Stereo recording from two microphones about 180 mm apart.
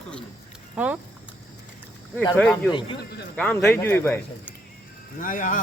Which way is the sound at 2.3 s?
5° left (ahead or behind).